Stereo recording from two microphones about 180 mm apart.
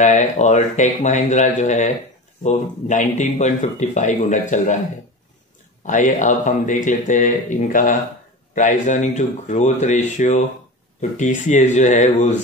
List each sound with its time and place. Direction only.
0.0 s speech: 40° left (ahead or behind)
5.9 s speech: 45° left (ahead or behind)